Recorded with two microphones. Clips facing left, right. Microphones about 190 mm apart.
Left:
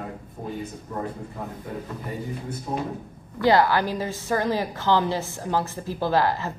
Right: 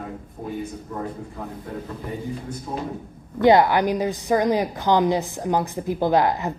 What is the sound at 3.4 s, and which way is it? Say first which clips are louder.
A woman's voice: right 4 dB; 20° right (ahead or behind).